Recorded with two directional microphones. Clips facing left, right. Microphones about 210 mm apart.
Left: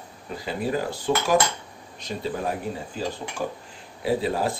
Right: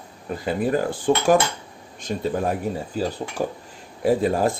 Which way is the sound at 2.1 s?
50° right (ahead or behind).